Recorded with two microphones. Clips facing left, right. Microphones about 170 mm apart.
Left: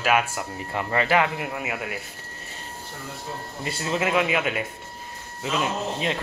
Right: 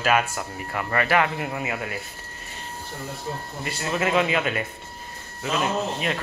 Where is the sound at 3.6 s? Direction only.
25° left (ahead or behind).